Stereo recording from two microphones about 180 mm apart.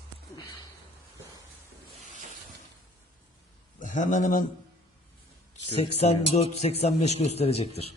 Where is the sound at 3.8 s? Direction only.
45° left (ahead or behind).